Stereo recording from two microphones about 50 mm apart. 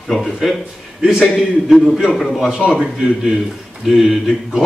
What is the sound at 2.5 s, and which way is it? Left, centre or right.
A man's voice, centre.